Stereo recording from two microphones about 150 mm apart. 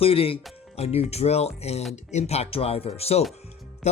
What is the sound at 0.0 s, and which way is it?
Speech, 40° left (ahead or behind).